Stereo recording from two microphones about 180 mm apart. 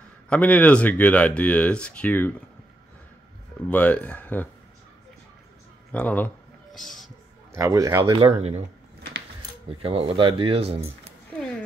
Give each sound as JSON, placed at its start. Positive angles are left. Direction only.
{"t": 0.3, "sound": "speech", "side_deg": 10}
{"t": 3.6, "sound": "speech", "side_deg": 10}
{"t": 5.9, "sound": "speech", "side_deg": 10}
{"t": 7.5, "sound": "speech", "side_deg": -15}
{"t": 8.0, "sound": "speech", "side_deg": -30}
{"t": 9.8, "sound": "speech", "side_deg": -30}